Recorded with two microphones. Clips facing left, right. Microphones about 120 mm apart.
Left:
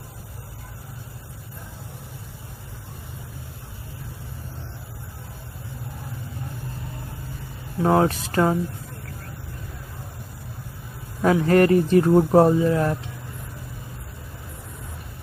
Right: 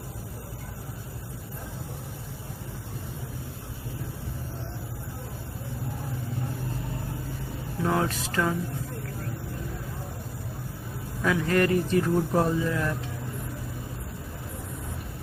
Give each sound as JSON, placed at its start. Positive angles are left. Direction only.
{"t": 7.8, "sound": "speech", "side_deg": 40}
{"t": 11.2, "sound": "speech", "side_deg": 40}